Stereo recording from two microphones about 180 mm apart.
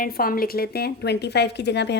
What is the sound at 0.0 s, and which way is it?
Speech, 55° left (ahead or behind).